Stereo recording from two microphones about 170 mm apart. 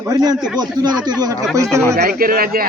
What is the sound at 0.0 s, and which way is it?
Speech, 20° right (ahead or behind).